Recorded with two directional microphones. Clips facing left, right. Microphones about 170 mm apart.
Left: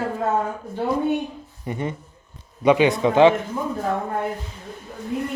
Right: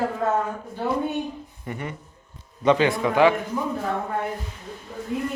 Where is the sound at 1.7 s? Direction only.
20° left (ahead or behind).